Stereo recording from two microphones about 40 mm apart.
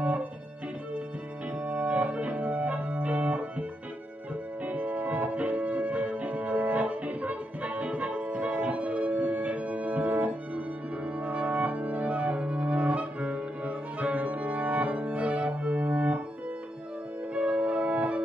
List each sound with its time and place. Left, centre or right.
0.0 s music: right
1.6 s organ: right
4.6 s music: right
11.1 s brass instrument: right
17.3 s music: right